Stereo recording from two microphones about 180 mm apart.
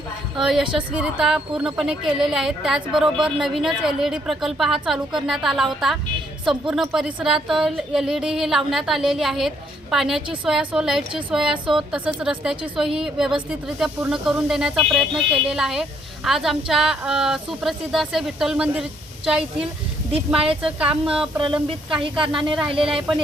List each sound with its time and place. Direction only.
0.3 s speech: centre (ahead or behind)
20.1 s speech: 30° right (ahead or behind)
20.6 s speech: 5° right (ahead or behind)
21.3 s speech: 25° right (ahead or behind)